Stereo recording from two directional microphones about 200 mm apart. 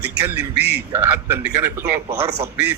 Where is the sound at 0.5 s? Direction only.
55° right (ahead or behind).